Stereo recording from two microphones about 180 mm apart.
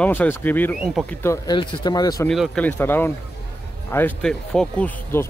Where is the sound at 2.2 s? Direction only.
Centre (ahead or behind).